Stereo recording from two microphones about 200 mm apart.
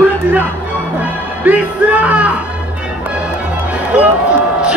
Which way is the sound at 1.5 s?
5° right (ahead or behind).